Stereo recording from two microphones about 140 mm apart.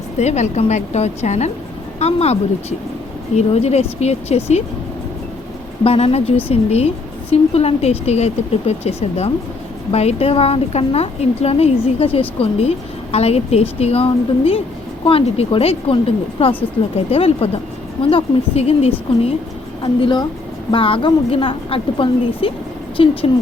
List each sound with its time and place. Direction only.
0.2 s a woman's voice: 55° left (ahead or behind)
5.8 s a woman's voice: 45° left (ahead or behind)